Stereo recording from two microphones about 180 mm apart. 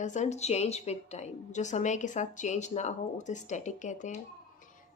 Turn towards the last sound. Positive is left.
turn(degrees=40)  # may be behind; listen again after turning